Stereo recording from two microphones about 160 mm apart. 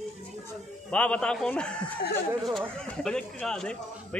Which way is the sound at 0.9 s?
10° left (ahead or behind).